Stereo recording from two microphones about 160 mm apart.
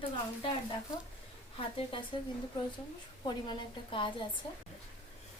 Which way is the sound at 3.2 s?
30° left (ahead or behind).